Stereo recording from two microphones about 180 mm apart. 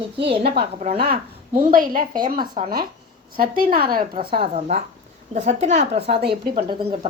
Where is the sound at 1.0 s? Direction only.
55° right (ahead or behind).